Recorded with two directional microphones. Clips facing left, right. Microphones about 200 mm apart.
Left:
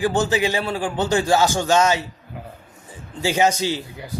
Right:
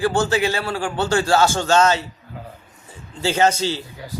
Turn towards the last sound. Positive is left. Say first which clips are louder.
# right 1 dB
turn(degrees=15)  # may be behind; listen again after turning